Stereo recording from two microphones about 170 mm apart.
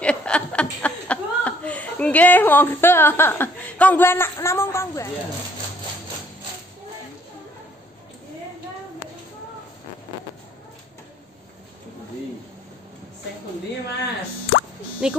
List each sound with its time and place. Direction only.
0.0 s chuckle: 5° left (ahead or behind)
15.0 s speech: 5° right (ahead or behind)